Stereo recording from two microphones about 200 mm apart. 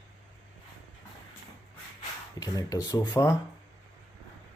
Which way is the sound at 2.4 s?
15° left (ahead or behind).